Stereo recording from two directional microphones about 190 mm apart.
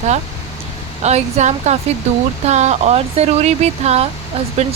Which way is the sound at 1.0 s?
35° right (ahead or behind).